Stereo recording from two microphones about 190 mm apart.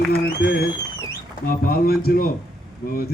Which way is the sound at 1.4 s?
50° left (ahead or behind).